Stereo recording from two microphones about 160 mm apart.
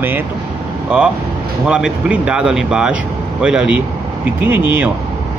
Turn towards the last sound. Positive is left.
turn(degrees=-15)  # may be behind; listen again after turning